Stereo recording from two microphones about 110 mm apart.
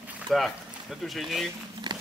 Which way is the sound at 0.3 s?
Centre (ahead or behind).